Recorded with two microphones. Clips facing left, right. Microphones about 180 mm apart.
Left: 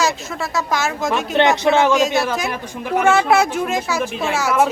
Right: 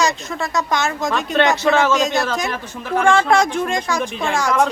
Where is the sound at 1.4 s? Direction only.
20° left (ahead or behind).